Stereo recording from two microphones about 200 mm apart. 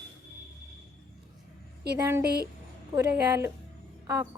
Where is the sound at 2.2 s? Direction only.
50° right (ahead or behind).